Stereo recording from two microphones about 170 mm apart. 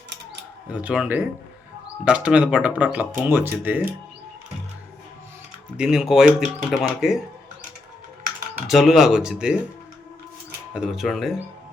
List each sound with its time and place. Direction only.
0.7 s speech: 5° right (ahead or behind)
5.7 s speech: 5° right (ahead or behind)
8.6 s speech: centre (ahead or behind)
10.8 s speech: centre (ahead or behind)